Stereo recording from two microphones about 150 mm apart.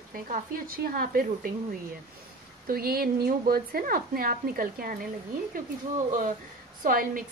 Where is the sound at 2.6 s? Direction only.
80° right.